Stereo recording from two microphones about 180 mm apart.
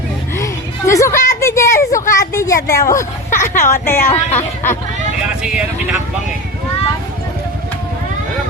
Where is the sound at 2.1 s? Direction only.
20° left (ahead or behind).